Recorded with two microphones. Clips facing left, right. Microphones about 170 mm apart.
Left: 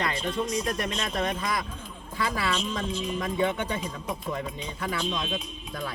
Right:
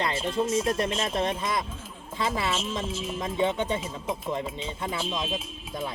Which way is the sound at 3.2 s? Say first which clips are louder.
Right 2 dB; 20° right (ahead or behind).